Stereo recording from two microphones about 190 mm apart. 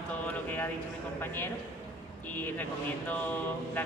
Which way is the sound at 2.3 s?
10° left (ahead or behind).